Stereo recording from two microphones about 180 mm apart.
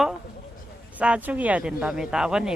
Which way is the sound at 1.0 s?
5° right (ahead or behind).